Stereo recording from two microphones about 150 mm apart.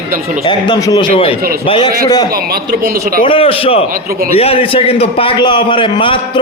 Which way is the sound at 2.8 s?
80° right.